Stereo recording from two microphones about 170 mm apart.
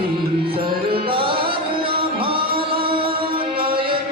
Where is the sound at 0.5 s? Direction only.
30° right (ahead or behind).